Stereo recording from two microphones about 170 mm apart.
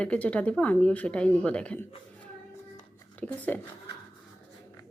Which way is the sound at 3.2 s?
10° left (ahead or behind).